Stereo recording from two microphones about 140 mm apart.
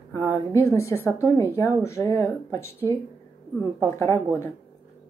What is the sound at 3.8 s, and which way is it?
Speech, 20° left (ahead or behind).